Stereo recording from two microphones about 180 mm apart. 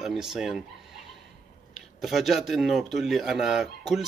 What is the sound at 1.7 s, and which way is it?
Speech, centre (ahead or behind).